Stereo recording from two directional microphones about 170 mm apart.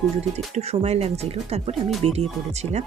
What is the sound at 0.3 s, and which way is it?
Speech, 40° right (ahead or behind).